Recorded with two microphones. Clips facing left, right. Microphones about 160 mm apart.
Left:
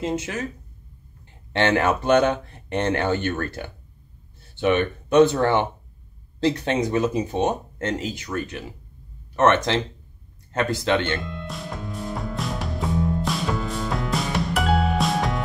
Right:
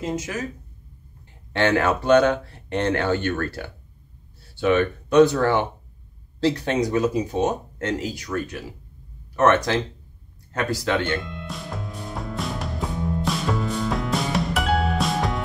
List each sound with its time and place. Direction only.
1.6 s speech: 20° left (ahead or behind)
11.1 s music: centre (ahead or behind)